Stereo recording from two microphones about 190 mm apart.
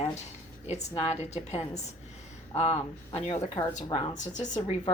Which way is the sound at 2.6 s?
35° left (ahead or behind).